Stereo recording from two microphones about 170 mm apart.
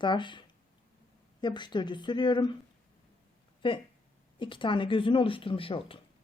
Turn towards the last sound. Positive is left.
turn(degrees=30)  # may be behind; listen again after turning